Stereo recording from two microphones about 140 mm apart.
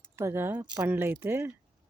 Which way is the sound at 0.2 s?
15° right (ahead or behind).